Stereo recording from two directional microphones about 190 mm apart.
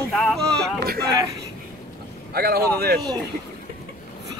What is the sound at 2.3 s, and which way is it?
Speech, 55° right (ahead or behind).